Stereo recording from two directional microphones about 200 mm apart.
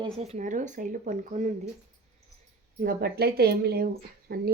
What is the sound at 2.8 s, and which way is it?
Speech, 50° right (ahead or behind).